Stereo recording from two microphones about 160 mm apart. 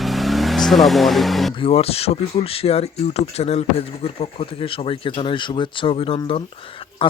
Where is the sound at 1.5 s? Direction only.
35° left (ahead or behind).